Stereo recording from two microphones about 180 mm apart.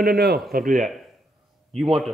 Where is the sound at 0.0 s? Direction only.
60° right (ahead or behind).